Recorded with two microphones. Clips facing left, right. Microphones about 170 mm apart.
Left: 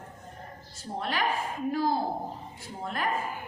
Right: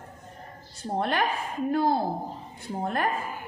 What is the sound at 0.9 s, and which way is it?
A woman's voice, 60° right (ahead or behind).